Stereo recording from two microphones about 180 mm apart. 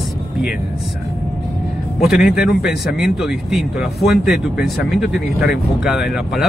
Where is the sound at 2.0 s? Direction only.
5° right (ahead or behind).